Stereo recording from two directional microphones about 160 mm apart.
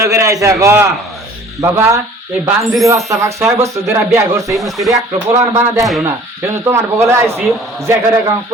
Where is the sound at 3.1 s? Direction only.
20° right (ahead or behind).